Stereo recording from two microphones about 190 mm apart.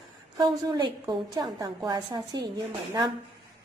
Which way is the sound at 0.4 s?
25° right (ahead or behind).